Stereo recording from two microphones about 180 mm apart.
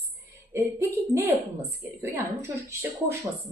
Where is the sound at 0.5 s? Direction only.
15° right (ahead or behind).